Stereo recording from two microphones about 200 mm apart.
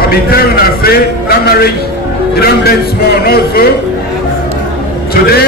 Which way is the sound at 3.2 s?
50° left (ahead or behind).